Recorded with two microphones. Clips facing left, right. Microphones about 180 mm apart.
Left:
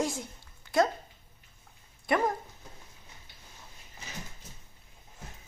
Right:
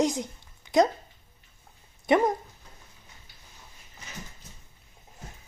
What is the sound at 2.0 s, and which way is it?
Speech, 20° right (ahead or behind).